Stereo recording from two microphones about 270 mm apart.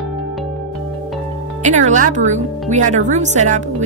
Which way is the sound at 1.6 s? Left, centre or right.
Right.